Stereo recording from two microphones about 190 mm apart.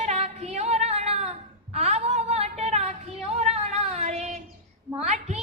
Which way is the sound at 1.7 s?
35° right (ahead or behind).